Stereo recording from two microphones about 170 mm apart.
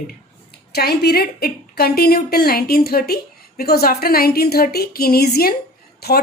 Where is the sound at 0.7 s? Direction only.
70° left (ahead or behind).